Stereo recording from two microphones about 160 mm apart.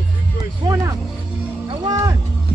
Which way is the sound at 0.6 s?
20° right (ahead or behind).